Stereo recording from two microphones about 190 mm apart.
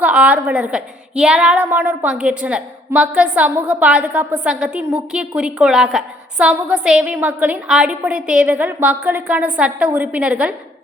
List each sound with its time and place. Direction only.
0.0 s a woman's voice: 5° right (ahead or behind)